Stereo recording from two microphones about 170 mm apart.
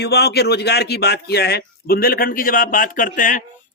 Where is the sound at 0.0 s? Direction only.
70° left (ahead or behind).